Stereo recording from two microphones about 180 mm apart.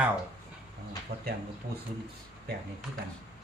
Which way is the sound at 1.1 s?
35° right (ahead or behind).